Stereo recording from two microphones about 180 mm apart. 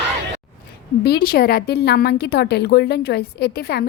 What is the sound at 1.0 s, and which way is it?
A woman's voice, 60° left (ahead or behind).